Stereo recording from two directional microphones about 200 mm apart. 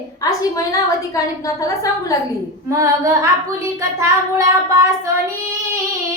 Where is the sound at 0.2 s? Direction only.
15° left (ahead or behind).